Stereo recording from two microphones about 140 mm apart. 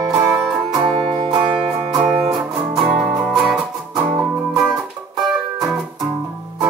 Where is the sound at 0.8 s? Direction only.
5° left (ahead or behind).